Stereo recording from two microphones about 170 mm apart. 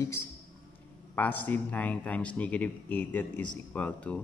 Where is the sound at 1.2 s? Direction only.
10° left (ahead or behind).